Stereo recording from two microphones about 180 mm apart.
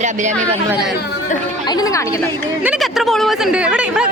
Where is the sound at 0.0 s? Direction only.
40° right (ahead or behind).